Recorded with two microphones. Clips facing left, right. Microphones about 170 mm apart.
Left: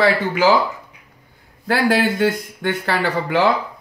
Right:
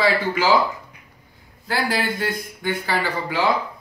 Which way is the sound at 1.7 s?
70° left (ahead or behind).